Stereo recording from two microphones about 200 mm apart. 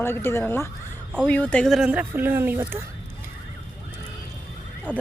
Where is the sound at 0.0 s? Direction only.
10° left (ahead or behind); by 2.6 s 10° right (ahead or behind).